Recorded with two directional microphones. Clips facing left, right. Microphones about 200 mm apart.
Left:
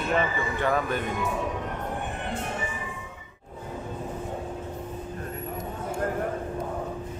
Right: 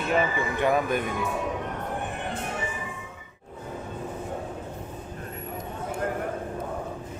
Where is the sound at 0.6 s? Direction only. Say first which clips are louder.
Right 3 dB; 15° right (ahead or behind).